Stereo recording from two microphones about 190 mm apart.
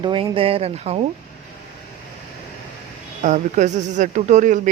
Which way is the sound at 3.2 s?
40° right (ahead or behind).